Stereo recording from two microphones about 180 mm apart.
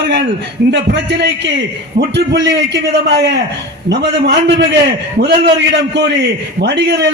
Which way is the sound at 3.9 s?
75° right (ahead or behind).